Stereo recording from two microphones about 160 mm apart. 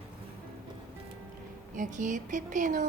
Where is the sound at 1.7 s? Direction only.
50° right (ahead or behind).